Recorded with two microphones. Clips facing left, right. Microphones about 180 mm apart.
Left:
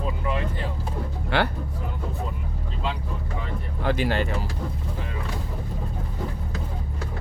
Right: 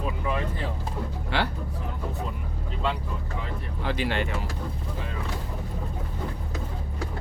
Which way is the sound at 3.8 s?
45° left (ahead or behind).